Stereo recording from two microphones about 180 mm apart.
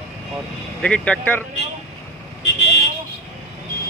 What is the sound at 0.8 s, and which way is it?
Speech, 5° left (ahead or behind).